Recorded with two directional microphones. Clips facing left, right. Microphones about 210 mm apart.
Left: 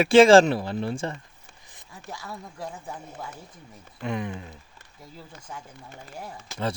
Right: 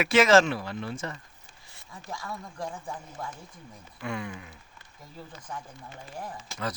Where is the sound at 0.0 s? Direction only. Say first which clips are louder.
Left 6 dB; 30° left (ahead or behind).